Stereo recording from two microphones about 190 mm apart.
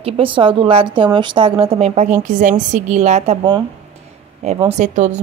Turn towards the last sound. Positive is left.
turn(degrees=-40)  # may be behind; listen again after turning